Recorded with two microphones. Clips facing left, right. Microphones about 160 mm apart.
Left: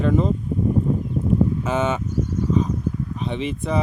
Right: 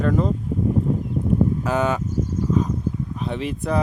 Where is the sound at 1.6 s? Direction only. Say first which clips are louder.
Right 1 dB; centre (ahead or behind).